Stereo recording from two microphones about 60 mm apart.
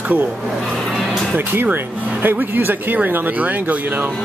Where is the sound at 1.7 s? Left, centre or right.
Right.